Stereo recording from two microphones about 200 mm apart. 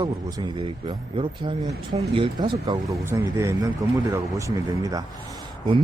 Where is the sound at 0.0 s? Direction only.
20° right (ahead or behind).